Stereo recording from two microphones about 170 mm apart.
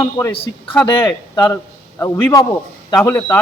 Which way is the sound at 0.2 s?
20° left (ahead or behind).